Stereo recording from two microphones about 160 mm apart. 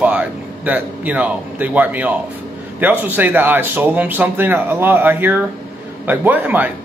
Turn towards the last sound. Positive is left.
turn(degrees=-10)  # may be behind; listen again after turning